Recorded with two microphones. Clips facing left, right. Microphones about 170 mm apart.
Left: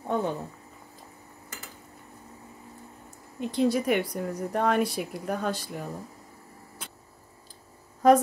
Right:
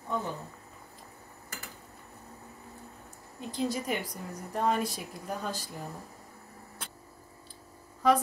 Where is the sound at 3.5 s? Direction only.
65° left (ahead or behind).